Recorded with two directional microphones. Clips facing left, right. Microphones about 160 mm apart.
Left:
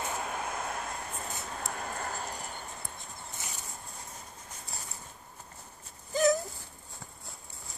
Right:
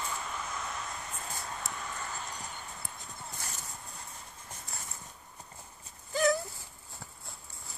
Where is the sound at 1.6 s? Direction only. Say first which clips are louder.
Left 4 dB; 55° left (ahead or behind).